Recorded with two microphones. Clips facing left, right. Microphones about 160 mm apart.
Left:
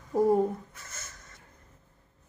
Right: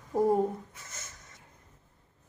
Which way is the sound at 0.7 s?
20° right (ahead or behind).